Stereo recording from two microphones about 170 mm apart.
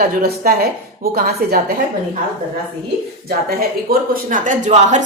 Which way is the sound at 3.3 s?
60° right (ahead or behind).